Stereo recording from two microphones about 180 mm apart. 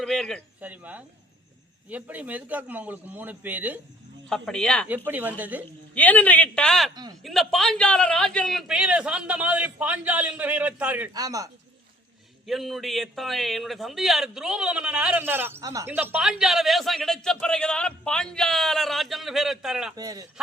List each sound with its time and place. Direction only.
0.0 s a man's voice: centre (ahead or behind)
0.6 s a man's voice: 10° right (ahead or behind)
4.3 s a man's voice: 5° left (ahead or behind)
4.9 s a man's voice: 10° right (ahead or behind)
5.9 s a man's voice: 10° left (ahead or behind)
6.9 s speech: 20° right (ahead or behind)
7.2 s a man's voice: centre (ahead or behind)
11.1 s speech: 20° right (ahead or behind)
12.5 s a man's voice: centre (ahead or behind)
20.0 s speech: 20° right (ahead or behind)